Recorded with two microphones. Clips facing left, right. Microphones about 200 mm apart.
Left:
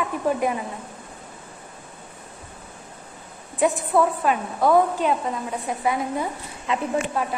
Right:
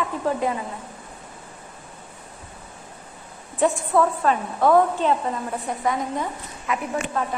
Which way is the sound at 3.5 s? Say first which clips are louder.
Even; 15° left (ahead or behind).